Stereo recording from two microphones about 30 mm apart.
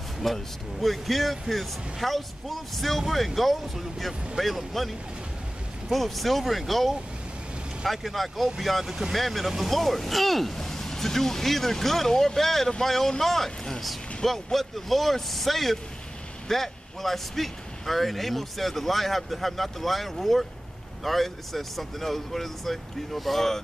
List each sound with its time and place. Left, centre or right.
0.2 s speech: centre
8.8 s speech: centre
9.1 s speech: centre